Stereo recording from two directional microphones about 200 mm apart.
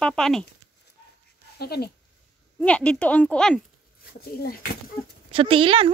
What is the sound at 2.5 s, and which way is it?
Speech, 5° left (ahead or behind).